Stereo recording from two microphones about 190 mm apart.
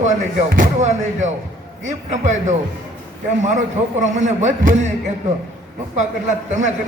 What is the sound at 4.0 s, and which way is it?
Speech, 40° right (ahead or behind).